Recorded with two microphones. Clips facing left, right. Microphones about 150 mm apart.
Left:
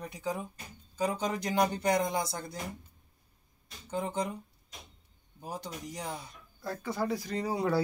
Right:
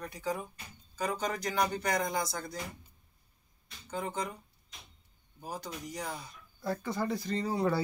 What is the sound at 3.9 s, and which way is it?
Speech, 25° left (ahead or behind).